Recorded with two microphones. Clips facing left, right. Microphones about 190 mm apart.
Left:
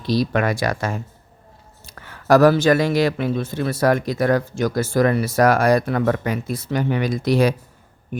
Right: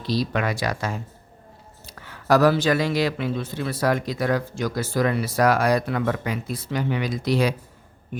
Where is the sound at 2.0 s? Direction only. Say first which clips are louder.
Left 4 dB; 50° left (ahead or behind).